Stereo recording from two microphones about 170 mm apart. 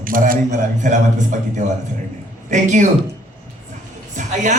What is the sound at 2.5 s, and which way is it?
Speech, 45° right (ahead or behind).